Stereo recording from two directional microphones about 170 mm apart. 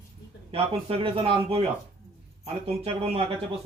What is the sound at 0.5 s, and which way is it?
A man's voice, 35° right (ahead or behind).